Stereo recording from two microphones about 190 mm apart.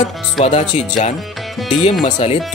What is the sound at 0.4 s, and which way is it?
Speech, 40° left (ahead or behind).